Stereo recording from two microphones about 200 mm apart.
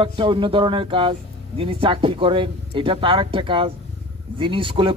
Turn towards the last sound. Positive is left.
turn(degrees=-25)  # may be behind; listen again after turning